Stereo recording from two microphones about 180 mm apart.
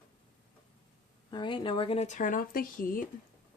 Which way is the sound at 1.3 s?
25° left (ahead or behind).